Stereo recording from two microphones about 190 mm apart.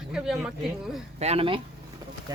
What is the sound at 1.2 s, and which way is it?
Speech, 30° right (ahead or behind).